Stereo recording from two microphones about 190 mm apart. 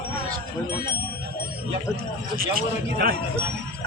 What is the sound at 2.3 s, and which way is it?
Speech, 50° right (ahead or behind).